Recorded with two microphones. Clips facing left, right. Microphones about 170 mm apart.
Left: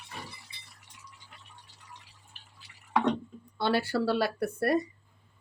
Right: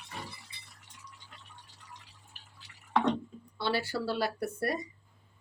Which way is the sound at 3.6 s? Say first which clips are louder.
Left 5 dB; 55° left (ahead or behind).